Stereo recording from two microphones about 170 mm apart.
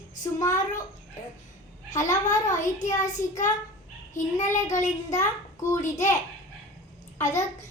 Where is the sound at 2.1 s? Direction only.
45° left (ahead or behind).